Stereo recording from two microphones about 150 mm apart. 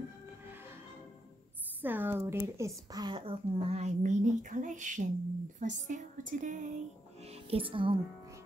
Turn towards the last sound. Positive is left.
turn(degrees=-35)  # may be behind; listen again after turning